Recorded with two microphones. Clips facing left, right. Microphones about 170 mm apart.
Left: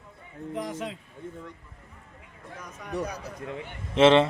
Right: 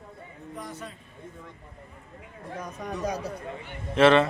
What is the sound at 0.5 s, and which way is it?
Speech, 90° left.